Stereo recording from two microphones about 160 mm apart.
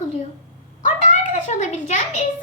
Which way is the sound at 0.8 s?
50° left (ahead or behind).